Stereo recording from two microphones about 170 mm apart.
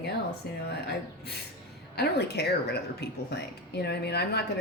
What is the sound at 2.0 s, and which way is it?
Speech, 75° left (ahead or behind).